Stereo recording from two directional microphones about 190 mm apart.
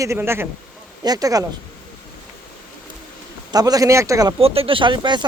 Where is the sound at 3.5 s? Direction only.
20° right (ahead or behind).